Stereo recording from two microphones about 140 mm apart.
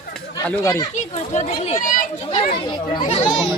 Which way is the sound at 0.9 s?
60° left (ahead or behind).